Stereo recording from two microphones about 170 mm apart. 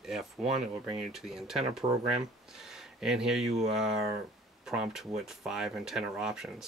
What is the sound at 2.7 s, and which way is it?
Speech, 5° right (ahead or behind).